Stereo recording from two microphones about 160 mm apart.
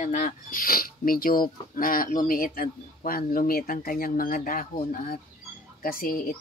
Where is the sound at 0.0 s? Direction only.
50° left (ahead or behind).